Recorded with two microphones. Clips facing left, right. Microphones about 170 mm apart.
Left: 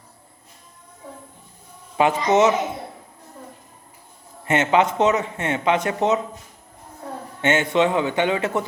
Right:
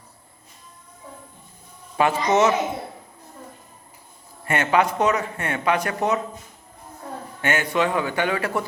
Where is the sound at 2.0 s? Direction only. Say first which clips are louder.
Left 2 dB; 20° left (ahead or behind).